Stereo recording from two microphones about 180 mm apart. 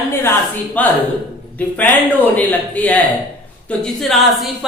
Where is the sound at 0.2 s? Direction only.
10° left (ahead or behind).